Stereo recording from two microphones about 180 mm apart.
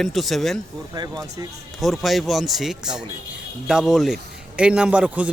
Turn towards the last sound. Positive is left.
turn(degrees=-5)  # may be behind; listen again after turning